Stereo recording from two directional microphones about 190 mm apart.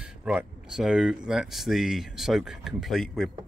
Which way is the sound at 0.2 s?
5° right (ahead or behind).